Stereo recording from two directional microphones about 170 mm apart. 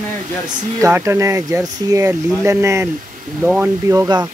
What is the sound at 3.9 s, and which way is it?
Speech, 15° right (ahead or behind).